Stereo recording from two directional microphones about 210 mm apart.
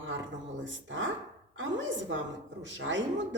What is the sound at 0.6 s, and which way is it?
A woman's voice, 65° right (ahead or behind).